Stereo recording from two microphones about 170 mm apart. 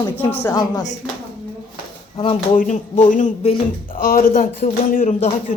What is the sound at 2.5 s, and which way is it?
Speech, 50° left (ahead or behind).